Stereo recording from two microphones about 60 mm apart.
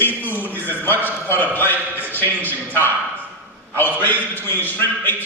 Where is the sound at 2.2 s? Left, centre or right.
Left.